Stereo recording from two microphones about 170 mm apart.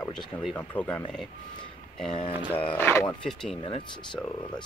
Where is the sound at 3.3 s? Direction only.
Centre (ahead or behind).